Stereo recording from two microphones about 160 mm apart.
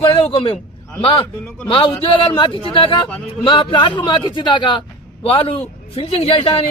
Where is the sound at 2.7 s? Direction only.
30° left (ahead or behind).